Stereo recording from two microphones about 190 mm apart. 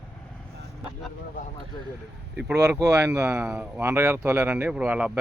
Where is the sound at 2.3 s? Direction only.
5° right (ahead or behind).